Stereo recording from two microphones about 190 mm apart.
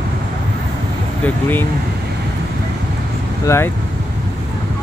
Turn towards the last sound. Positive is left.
turn(degrees=15)  # may be behind; listen again after turning